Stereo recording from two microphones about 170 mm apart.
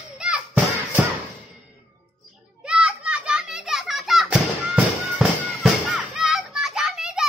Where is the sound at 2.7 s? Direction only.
5° right (ahead or behind).